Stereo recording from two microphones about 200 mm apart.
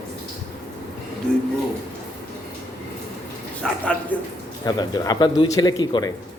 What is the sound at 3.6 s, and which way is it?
Speech, 5° left (ahead or behind).